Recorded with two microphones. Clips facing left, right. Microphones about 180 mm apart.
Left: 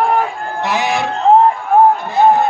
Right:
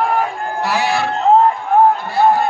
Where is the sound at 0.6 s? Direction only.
20° left (ahead or behind).